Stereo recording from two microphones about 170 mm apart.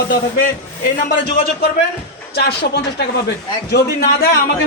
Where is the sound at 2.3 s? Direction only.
70° left (ahead or behind).